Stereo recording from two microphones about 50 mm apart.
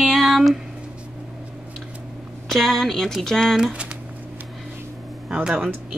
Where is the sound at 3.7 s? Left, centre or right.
Right.